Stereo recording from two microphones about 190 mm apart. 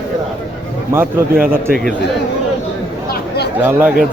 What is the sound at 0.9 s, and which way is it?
Speech, 10° right (ahead or behind).